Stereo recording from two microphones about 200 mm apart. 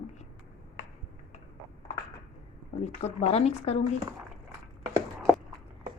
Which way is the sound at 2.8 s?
35° left (ahead or behind).